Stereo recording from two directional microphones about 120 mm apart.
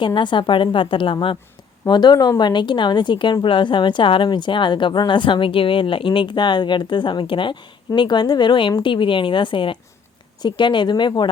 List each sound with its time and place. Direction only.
0.0 s a woman's voice: 40° left (ahead or behind)